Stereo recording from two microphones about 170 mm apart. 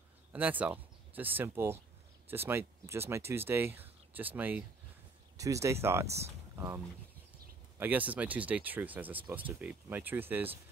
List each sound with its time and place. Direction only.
0.3 s speech: 10° right (ahead or behind)
7.8 s speech: 10° right (ahead or behind)